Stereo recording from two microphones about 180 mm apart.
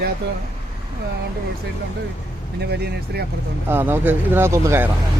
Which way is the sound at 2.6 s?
65° right (ahead or behind).